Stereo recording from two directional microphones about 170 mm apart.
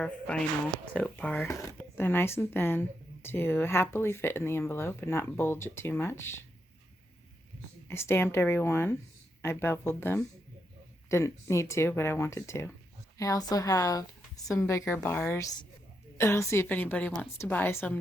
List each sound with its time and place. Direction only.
0.0 s speech: 5° left (ahead or behind)
7.9 s a woman's voice: 15° left (ahead or behind)